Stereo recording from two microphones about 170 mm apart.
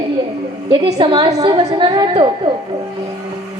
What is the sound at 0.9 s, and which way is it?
A woman's voice, 30° right (ahead or behind).